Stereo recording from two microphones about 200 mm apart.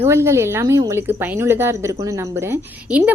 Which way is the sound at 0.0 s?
15° right (ahead or behind).